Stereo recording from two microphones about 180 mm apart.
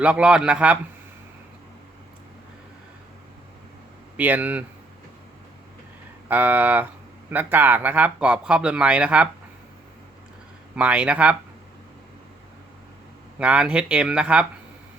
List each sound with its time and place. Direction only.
0.0 s a man's voice: 5° right (ahead or behind)
4.2 s speech: 10° right (ahead or behind)
6.2 s speech: 10° right (ahead or behind)
10.8 s speech: 5° right (ahead or behind)
13.4 s speech: 5° right (ahead or behind)